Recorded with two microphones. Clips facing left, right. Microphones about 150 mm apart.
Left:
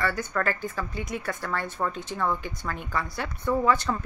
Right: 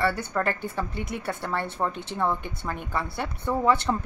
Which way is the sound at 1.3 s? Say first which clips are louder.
Right 3 dB; 20° right (ahead or behind).